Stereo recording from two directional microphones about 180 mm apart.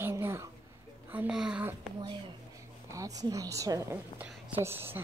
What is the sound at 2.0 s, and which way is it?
A woman's voice, 30° right (ahead or behind).